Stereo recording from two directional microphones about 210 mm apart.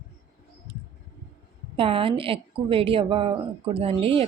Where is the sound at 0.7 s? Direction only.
25° right (ahead or behind).